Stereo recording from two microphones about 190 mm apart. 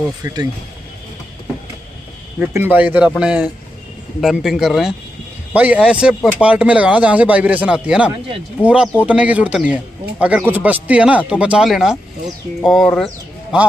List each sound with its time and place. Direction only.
0.2 s speech: 20° right (ahead or behind)
2.3 s speech: 10° right (ahead or behind)